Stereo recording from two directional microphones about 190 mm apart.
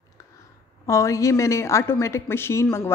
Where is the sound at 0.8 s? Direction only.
15° left (ahead or behind).